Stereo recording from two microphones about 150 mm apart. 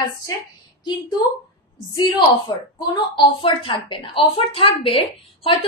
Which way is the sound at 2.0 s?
30° left (ahead or behind).